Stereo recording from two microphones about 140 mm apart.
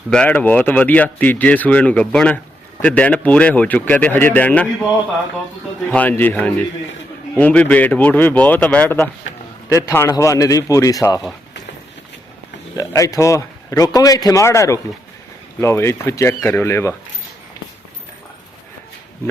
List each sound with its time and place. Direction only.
0.1 s speech: 10° left (ahead or behind)
5.9 s speech: 10° left (ahead or behind)
9.6 s a man's voice: 20° left (ahead or behind)
12.7 s a man's voice: 25° left (ahead or behind)